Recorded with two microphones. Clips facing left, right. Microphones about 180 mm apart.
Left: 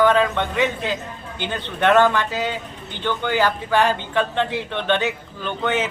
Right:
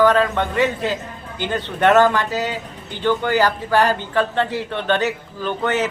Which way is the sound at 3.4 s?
10° right (ahead or behind).